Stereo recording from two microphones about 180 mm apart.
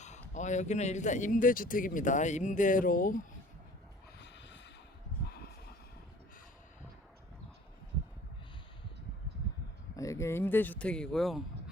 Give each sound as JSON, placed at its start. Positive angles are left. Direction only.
{"t": 0.0, "sound": "speech", "side_deg": 40}
{"t": 4.2, "sound": "snort", "side_deg": 75}
{"t": 9.9, "sound": "speech", "side_deg": 15}